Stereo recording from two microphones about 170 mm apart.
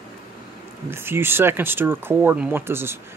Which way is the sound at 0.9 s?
15° right (ahead or behind).